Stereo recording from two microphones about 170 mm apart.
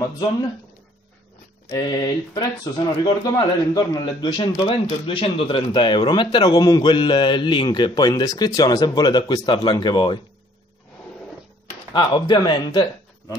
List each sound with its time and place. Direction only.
1.7 s speech: 25° left (ahead or behind)
11.9 s speech: 25° left (ahead or behind)